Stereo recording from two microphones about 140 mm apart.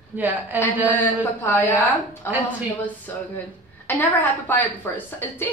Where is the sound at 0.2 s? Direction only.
15° right (ahead or behind).